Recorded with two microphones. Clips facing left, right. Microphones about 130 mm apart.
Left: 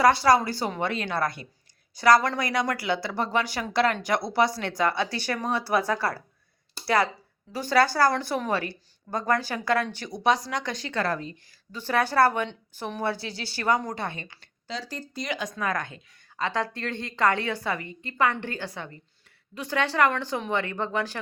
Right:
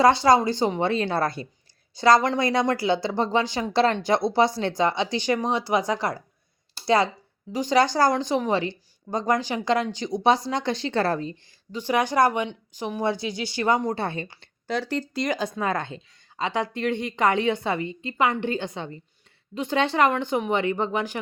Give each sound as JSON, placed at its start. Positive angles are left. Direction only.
{"t": 0.0, "sound": "a woman's voice", "side_deg": -25}
{"t": 11.7, "sound": "a woman's voice", "side_deg": -15}
{"t": 14.7, "sound": "speech", "side_deg": -60}
{"t": 15.3, "sound": "a woman's voice", "side_deg": -30}
{"t": 16.4, "sound": "a woman's voice", "side_deg": -15}